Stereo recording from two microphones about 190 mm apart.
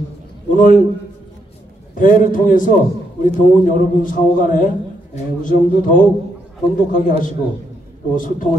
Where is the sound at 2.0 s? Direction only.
45° left (ahead or behind).